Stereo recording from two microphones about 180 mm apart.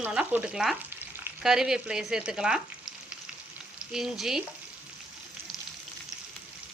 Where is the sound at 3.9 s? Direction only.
Centre (ahead or behind).